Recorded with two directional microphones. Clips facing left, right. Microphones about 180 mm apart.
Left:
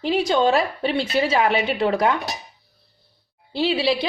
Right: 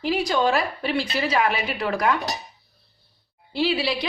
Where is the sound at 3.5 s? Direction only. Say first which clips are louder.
Left 3 dB; 25° left (ahead or behind).